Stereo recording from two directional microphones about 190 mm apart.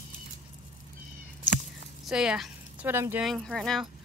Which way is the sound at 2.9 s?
10° right (ahead or behind).